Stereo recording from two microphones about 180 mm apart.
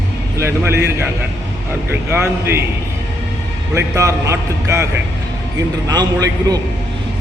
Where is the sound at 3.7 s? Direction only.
15° right (ahead or behind).